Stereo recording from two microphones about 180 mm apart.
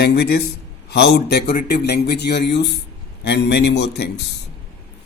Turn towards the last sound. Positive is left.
turn(degrees=65)  # may be behind; listen again after turning